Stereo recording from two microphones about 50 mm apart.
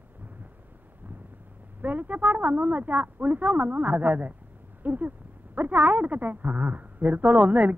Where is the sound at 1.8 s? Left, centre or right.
Right.